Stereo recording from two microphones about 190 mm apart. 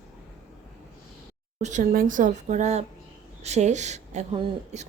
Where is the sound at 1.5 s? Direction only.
40° right (ahead or behind).